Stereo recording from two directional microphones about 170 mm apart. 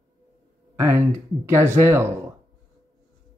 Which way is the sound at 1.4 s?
20° right (ahead or behind).